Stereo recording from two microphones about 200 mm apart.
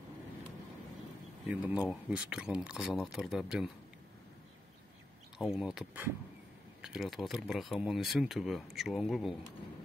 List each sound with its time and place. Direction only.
1.5 s speech: 5° right (ahead or behind)
5.4 s speech: centre (ahead or behind)